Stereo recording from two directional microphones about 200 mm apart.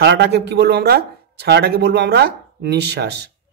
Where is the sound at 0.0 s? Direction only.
60° right (ahead or behind).